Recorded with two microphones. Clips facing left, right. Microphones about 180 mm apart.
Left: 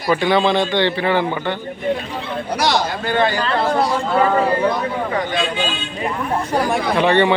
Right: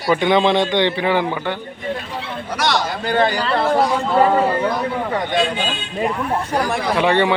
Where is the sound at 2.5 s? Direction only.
35° left (ahead or behind).